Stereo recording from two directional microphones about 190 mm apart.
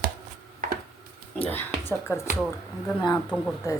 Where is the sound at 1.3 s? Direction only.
10° left (ahead or behind).